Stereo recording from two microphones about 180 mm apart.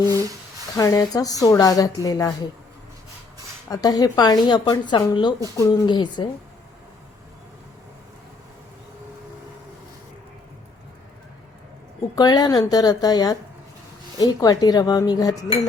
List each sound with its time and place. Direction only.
0.0 s a sound: 20° right (ahead or behind)
0.8 s speech: 20° left (ahead or behind)
3.7 s speech: 20° left (ahead or behind)
12.1 s speech: 20° left (ahead or behind)